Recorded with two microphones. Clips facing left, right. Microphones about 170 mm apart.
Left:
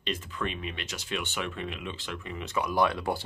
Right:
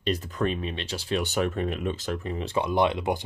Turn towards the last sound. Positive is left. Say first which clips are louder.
# right 3 dB
turn(degrees=-20)  # may be behind; listen again after turning